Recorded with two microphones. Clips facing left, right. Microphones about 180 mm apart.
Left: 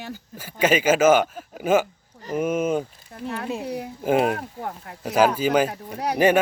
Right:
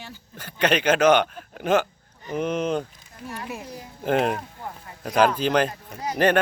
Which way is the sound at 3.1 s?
60° left (ahead or behind).